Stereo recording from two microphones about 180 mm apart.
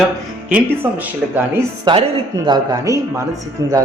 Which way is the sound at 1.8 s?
25° right (ahead or behind).